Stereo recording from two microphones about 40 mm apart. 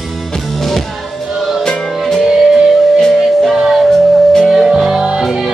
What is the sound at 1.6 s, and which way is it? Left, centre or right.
Music, centre.